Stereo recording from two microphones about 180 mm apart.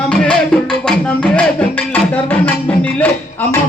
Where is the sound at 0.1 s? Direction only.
5° left (ahead or behind).